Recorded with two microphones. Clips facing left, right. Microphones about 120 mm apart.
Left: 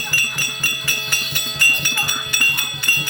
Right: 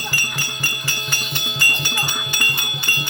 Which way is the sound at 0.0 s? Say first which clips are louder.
Right 1 dB; 25° right (ahead or behind).